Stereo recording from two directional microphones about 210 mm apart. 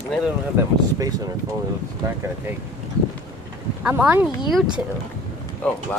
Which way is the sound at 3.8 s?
10° right (ahead or behind).